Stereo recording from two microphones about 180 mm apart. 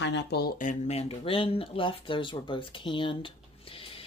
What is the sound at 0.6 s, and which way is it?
Speech, 40° left (ahead or behind).